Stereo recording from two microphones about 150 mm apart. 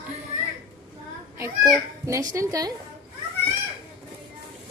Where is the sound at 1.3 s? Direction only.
20° right (ahead or behind).